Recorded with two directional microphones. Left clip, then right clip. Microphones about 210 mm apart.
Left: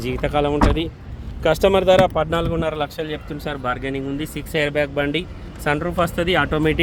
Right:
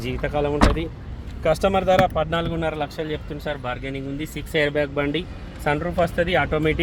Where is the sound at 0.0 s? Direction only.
15° left (ahead or behind).